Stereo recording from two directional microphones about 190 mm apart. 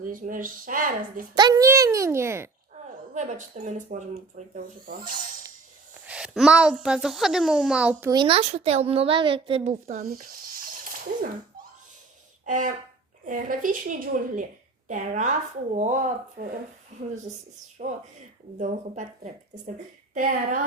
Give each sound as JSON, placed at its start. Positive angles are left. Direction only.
{"t": 0.0, "sound": "speech", "side_deg": -45}
{"t": 1.4, "sound": "a child's voice", "side_deg": -20}
{"t": 3.2, "sound": "speech", "side_deg": -40}
{"t": 6.1, "sound": "a child's voice", "side_deg": -5}
{"t": 8.1, "sound": "speech", "side_deg": -25}
{"t": 10.0, "sound": "sizzle", "side_deg": -50}
{"t": 12.5, "sound": "speech", "side_deg": -45}
{"t": 18.6, "sound": "speech", "side_deg": -40}